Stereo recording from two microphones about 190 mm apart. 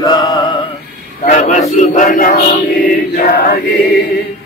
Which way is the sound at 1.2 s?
35° left (ahead or behind).